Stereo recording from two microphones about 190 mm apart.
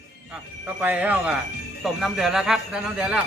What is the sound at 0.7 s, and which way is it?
A man's voice, 10° right (ahead or behind).